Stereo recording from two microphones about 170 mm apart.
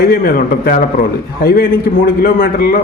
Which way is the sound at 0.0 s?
60° left (ahead or behind).